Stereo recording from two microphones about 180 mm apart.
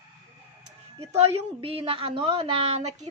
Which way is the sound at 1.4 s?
30° right (ahead or behind).